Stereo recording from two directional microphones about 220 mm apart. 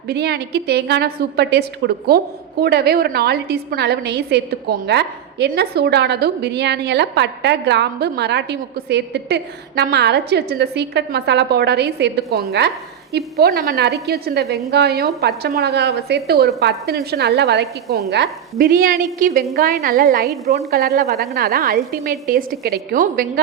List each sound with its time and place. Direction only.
0.1 s a woman's voice: 50° right (ahead or behind)